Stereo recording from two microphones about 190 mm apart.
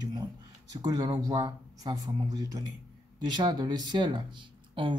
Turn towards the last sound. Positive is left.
turn(degrees=-25)  # may be behind; listen again after turning